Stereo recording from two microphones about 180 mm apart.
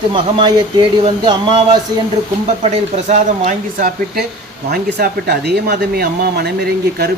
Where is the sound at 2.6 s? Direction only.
40° right (ahead or behind).